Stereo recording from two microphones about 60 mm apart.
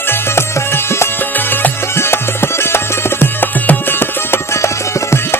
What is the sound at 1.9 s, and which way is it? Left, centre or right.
Tabla, left.